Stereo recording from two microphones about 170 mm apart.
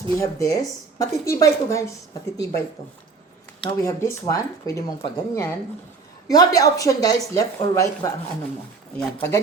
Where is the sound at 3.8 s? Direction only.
15° left (ahead or behind).